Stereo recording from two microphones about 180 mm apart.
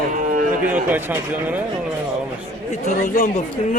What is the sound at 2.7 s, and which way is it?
Speech, 45° left (ahead or behind).